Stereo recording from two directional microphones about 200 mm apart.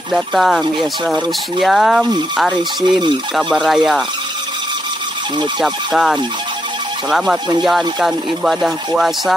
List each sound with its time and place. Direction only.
0.1 s speech: centre (ahead or behind)
2.9 s speech: 20° right (ahead or behind)
3.3 s speech: centre (ahead or behind)
5.6 s speech: centre (ahead or behind)